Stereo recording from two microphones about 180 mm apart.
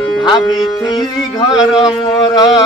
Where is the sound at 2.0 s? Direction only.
25° left (ahead or behind).